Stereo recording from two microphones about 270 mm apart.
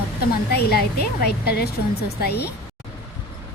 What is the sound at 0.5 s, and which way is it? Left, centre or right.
A woman's voice, left.